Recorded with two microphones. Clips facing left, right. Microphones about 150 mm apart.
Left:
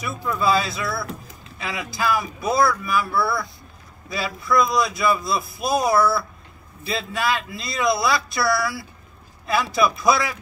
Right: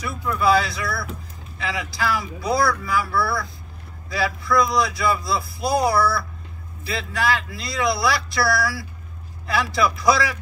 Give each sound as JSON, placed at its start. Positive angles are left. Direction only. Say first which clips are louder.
{"t": 0.0, "sound": "a man's voice", "louder": "right 1 dB", "side_deg": 20}